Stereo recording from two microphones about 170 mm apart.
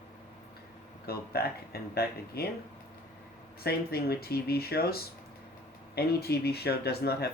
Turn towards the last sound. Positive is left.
turn(degrees=70)  # may be behind; listen again after turning